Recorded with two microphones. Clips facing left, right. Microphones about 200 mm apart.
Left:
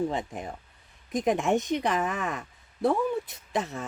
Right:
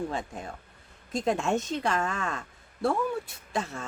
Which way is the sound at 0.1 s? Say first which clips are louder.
Left 2 dB; 20° left (ahead or behind).